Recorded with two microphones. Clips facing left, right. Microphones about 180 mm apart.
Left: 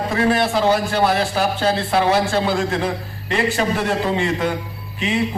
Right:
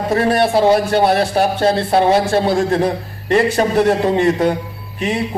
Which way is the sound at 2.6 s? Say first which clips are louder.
Right 6 dB; 35° right (ahead or behind).